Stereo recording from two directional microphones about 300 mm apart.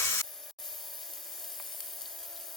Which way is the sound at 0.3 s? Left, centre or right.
Centre.